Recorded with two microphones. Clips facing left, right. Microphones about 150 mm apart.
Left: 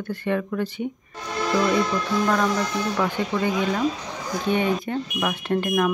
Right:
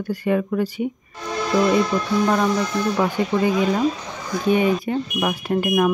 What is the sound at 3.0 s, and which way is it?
Speech, 10° right (ahead or behind).